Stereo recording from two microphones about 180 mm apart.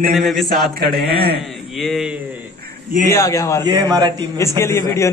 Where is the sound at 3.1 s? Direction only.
15° left (ahead or behind).